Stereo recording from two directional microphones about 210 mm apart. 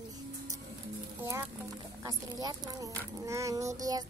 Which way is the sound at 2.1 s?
15° right (ahead or behind).